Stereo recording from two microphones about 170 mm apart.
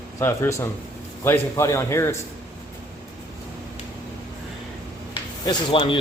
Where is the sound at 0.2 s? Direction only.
15° left (ahead or behind).